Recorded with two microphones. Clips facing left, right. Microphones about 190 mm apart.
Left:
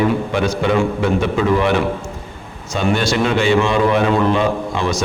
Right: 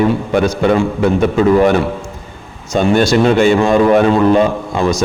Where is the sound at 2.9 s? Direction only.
45° right (ahead or behind).